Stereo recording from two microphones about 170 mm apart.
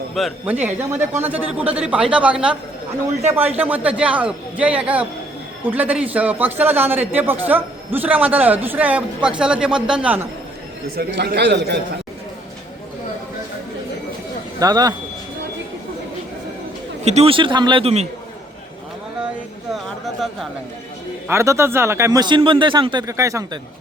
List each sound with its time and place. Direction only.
0.1 s speech: centre (ahead or behind)
0.4 s a man's voice: 10° right (ahead or behind)
10.8 s a man's voice: 70° right (ahead or behind); by 11.8 s 85° right
14.6 s a man's voice: 20° right (ahead or behind)
17.0 s a man's voice: 40° right (ahead or behind)
21.2 s a man's voice: 15° right (ahead or behind)